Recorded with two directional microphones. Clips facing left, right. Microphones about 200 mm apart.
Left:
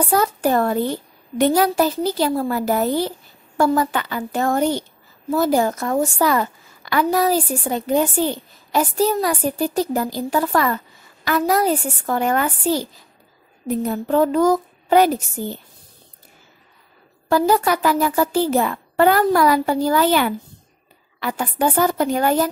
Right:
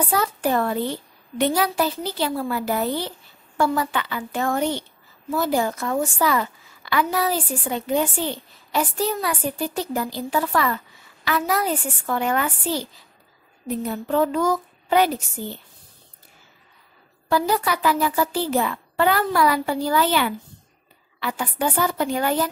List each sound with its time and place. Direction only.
0.1 s a child's voice: 45° left (ahead or behind)
17.3 s a child's voice: 45° left (ahead or behind)